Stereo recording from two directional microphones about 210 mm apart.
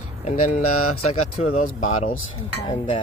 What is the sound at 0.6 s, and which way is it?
Speech, 90° left.